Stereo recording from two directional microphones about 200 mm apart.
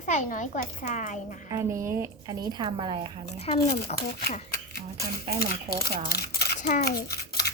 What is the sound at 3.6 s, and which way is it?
Speech, 50° left (ahead or behind).